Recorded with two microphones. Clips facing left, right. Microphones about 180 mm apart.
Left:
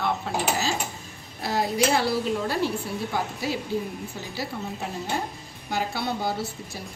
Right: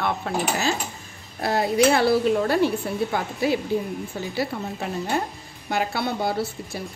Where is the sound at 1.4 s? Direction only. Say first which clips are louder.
Right 4 dB; 60° right (ahead or behind).